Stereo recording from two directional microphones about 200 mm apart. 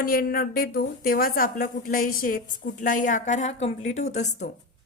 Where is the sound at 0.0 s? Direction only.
45° left (ahead or behind).